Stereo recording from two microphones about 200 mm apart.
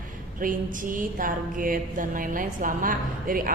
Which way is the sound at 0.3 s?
45° right (ahead or behind).